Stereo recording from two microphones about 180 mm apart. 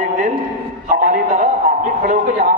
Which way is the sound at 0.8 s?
50° right (ahead or behind).